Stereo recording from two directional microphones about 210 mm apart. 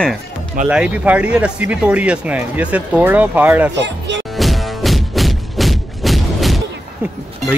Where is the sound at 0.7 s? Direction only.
5° right (ahead or behind).